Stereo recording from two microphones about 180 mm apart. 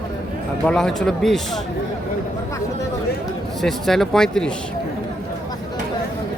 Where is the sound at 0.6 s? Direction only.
5° left (ahead or behind).